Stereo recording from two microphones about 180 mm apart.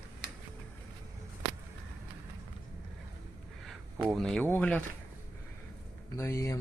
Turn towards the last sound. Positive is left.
turn(degrees=15)  # may be behind; listen again after turning